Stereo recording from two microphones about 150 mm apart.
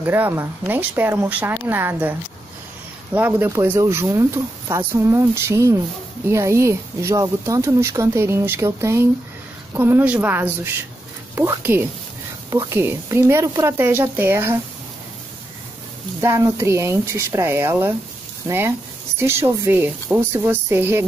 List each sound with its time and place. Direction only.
0.0 s speech: 15° right (ahead or behind)
3.2 s speech: 10° right (ahead or behind)
16.2 s speech: 20° right (ahead or behind)